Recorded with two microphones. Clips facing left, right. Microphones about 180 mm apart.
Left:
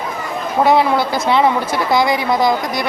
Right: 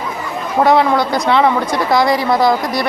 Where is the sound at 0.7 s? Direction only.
5° left (ahead or behind).